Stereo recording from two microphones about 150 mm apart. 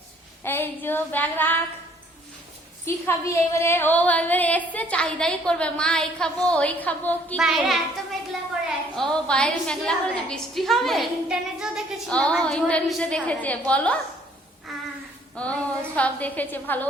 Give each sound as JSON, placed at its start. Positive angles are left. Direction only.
{"t": 0.4, "sound": "speech", "side_deg": 15}
{"t": 2.8, "sound": "speech", "side_deg": 20}
{"t": 7.3, "sound": "a woman's voice", "side_deg": 0}
{"t": 9.0, "sound": "a woman's voice", "side_deg": 5}
{"t": 14.7, "sound": "a sound", "side_deg": 0}
{"t": 15.4, "sound": "speech", "side_deg": 10}